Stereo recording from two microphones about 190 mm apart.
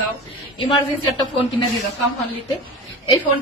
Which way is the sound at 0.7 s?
25° left (ahead or behind).